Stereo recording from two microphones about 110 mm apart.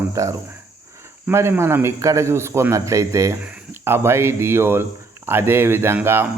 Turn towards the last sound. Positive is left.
turn(degrees=-20)  # may be behind; listen again after turning